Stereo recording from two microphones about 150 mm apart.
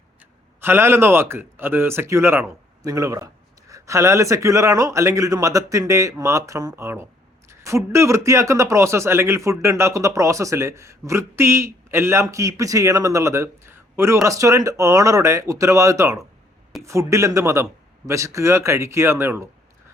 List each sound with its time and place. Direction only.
0.2 s speech: 15° right (ahead or behind)